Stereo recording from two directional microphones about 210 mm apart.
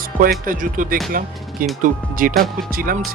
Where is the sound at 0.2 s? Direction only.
40° right (ahead or behind).